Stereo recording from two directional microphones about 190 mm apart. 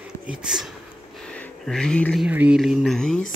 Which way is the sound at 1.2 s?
5° left (ahead or behind).